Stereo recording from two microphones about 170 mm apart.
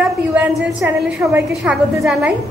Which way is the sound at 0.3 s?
10° right (ahead or behind).